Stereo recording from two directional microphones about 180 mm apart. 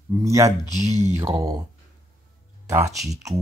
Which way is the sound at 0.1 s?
15° right (ahead or behind).